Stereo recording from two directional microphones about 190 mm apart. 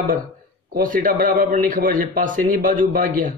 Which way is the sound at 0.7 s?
45° right (ahead or behind).